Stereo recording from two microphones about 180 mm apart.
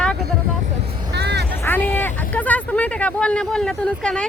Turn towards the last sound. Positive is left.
turn(degrees=5)  # may be behind; listen again after turning